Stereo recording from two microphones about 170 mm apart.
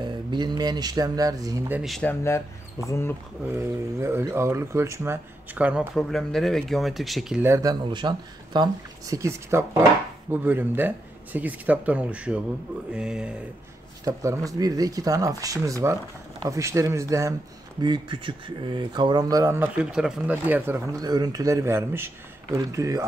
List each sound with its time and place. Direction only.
0.0 s speech: 25° right (ahead or behind)
1.8 s speech: centre (ahead or behind)
2.0 s speech: 15° left (ahead or behind)
3.5 s speech: 15° right (ahead or behind)
5.9 s speech: centre (ahead or behind)
7.4 s speech: 15° right (ahead or behind)
7.8 s speech: 25° right (ahead or behind); by 13.3 s 5° right (ahead or behind)
14.0 s speech: 20° right (ahead or behind)